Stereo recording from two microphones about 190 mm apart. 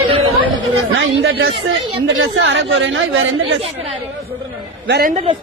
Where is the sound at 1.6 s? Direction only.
90° right.